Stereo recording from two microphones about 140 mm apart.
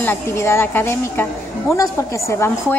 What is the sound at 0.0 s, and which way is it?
A woman's voice, 15° left (ahead or behind).